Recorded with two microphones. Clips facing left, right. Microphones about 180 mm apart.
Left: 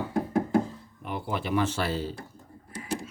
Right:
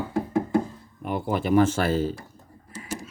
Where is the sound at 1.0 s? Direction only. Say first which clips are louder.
Right 6 dB; 45° right (ahead or behind).